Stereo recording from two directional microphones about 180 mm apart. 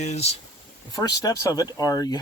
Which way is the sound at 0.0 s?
40° left (ahead or behind).